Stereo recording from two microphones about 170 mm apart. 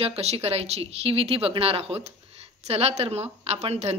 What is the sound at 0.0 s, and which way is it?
Speech, 35° right (ahead or behind).